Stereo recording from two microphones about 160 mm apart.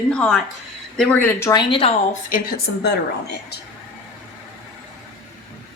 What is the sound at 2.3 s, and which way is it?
Speech, 65° left (ahead or behind).